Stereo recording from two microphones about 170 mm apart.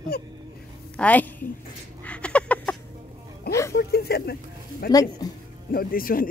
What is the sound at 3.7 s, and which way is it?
Speech, 70° left (ahead or behind).